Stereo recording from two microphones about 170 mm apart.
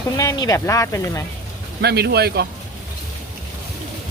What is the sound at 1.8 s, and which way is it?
Speech, 70° right (ahead or behind).